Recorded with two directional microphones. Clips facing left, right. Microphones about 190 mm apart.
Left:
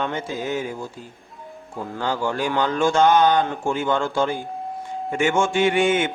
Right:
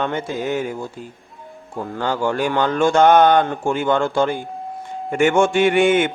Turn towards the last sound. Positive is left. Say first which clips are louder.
# right 4 dB
turn(degrees=-60)  # may be behind; listen again after turning